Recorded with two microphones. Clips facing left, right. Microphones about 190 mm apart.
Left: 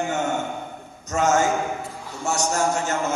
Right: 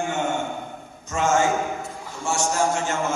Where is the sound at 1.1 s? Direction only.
40° left (ahead or behind).